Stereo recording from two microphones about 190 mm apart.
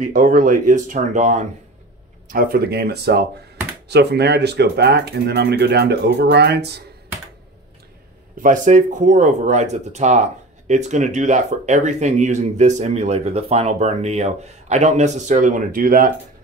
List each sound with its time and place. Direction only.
0.0 s speech: 45° right (ahead or behind)
2.2 s speech: 50° right (ahead or behind)
8.4 s speech: 40° right (ahead or behind)